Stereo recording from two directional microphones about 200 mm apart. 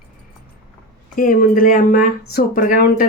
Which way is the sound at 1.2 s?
45° left (ahead or behind).